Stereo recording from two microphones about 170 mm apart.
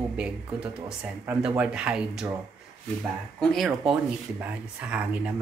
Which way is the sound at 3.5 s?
Centre (ahead or behind).